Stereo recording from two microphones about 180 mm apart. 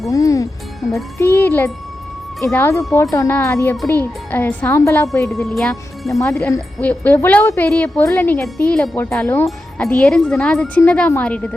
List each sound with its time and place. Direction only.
0.1 s speech: 20° left (ahead or behind)
0.8 s speech: centre (ahead or behind)
1.2 s speech: 10° left (ahead or behind)
5.3 s speech: centre (ahead or behind)
6.1 s speech: 15° left (ahead or behind)